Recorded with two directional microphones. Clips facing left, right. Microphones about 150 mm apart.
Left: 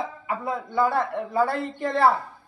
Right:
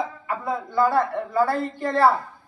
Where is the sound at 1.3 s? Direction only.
20° left (ahead or behind).